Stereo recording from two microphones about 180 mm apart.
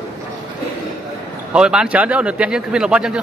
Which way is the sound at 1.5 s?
5° right (ahead or behind).